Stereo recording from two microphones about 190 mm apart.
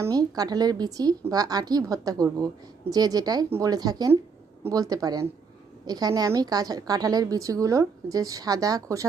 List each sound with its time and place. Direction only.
0.0 s a woman's voice: 20° right (ahead or behind)